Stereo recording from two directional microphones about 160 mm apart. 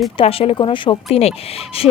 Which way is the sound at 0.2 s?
35° left (ahead or behind).